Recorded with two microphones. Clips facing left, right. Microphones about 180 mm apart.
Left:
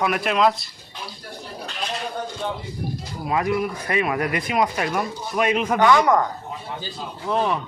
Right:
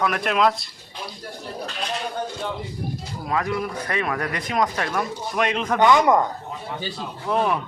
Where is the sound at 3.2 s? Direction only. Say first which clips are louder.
Left 3 dB; 15° left (ahead or behind).